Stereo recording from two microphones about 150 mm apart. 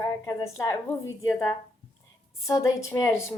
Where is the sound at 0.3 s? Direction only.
20° left (ahead or behind).